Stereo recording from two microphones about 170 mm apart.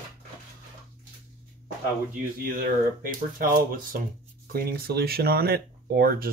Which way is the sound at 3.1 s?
60° right (ahead or behind).